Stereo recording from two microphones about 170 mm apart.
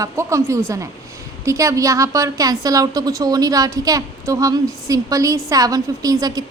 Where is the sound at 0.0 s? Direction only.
20° right (ahead or behind).